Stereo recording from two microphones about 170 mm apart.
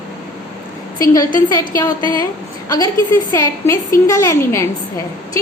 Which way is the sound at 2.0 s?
30° right (ahead or behind).